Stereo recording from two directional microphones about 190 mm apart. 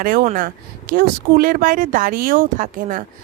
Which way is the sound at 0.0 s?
50° right (ahead or behind).